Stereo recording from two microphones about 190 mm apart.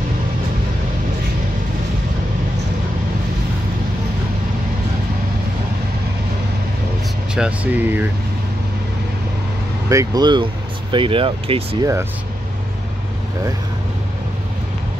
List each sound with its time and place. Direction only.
7.3 s speech: 5° right (ahead or behind)
9.8 s speech: 20° right (ahead or behind)
11.8 s speech: 15° right (ahead or behind)